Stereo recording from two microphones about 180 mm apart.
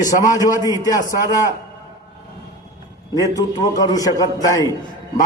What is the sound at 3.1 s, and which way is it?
A man's voice, 20° left (ahead or behind).